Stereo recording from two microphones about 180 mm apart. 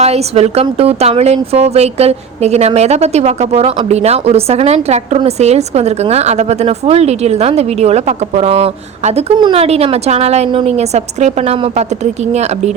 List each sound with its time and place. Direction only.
0.0 s a woman's voice: 35° right (ahead or behind)